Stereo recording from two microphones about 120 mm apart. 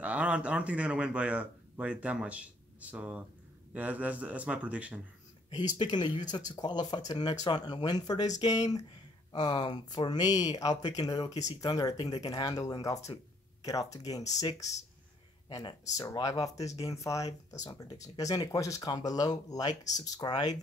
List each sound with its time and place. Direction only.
0.0 s a man's voice: 10° right (ahead or behind)
5.5 s speech: 35° left (ahead or behind)
15.4 s a sound: 40° left (ahead or behind)
15.9 s speech: 30° left (ahead or behind)